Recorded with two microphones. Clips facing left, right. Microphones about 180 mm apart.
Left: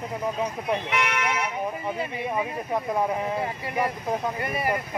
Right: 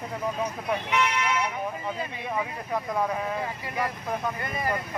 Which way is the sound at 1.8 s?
20° left (ahead or behind).